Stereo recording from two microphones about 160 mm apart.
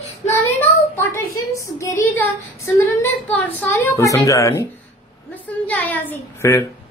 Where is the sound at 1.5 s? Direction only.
20° left (ahead or behind).